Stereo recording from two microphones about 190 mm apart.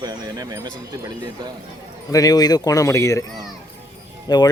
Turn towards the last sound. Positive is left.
turn(degrees=20)  # may be behind; listen again after turning